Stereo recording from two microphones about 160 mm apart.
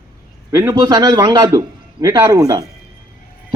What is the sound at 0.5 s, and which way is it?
A man's voice, 25° right (ahead or behind).